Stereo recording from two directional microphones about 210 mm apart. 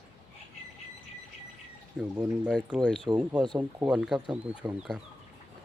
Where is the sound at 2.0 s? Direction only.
Centre (ahead or behind).